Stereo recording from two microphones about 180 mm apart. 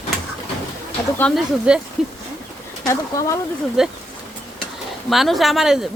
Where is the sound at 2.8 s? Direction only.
15° left (ahead or behind).